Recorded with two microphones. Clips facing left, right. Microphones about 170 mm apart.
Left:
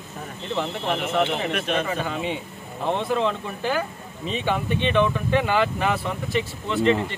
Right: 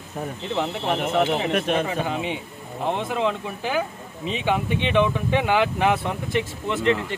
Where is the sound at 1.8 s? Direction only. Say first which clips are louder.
Right 1 dB; 15° right (ahead or behind).